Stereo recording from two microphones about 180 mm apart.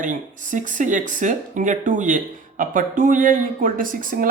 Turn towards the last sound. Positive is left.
turn(degrees=-50)  # may be behind; listen again after turning